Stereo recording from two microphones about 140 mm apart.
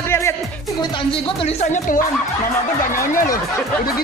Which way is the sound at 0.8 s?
40° left (ahead or behind).